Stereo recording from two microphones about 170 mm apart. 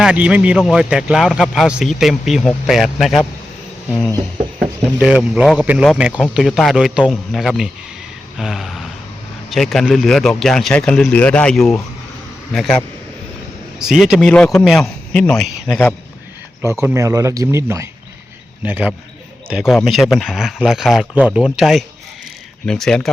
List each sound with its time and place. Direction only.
0.0 s a man's voice: 5° right (ahead or behind)
4.6 s a man's voice: 5° right (ahead or behind)
16.8 s a man's voice: 15° right (ahead or behind); by 23.0 s 5° left (ahead or behind)